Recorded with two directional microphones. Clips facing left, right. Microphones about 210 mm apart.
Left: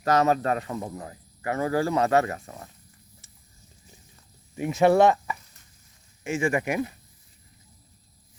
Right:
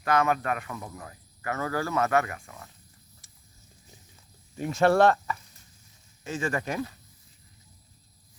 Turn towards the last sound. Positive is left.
turn(degrees=15)  # may be behind; listen again after turning